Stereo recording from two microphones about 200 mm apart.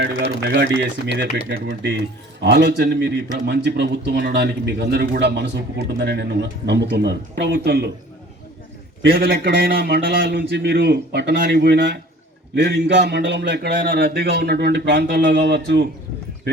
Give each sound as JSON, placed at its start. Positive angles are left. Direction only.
{"t": 0.0, "sound": "a man's voice", "side_deg": -60}
{"t": 9.0, "sound": "a man's voice", "side_deg": -50}